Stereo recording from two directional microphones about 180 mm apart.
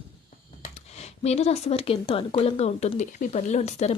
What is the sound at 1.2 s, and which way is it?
Speech, 35° left (ahead or behind).